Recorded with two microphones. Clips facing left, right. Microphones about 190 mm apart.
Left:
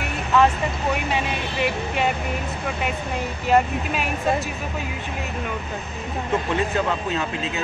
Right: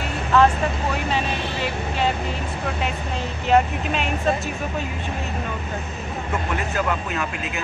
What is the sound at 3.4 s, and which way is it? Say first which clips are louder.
Speech: right 1 dB; 5° left (ahead or behind).